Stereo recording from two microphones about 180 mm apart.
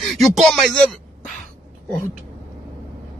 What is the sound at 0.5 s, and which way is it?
Speech, centre (ahead or behind).